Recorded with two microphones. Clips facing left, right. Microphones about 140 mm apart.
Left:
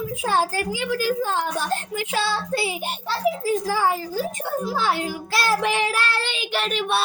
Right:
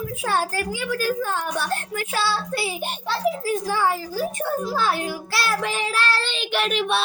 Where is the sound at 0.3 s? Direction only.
20° left (ahead or behind).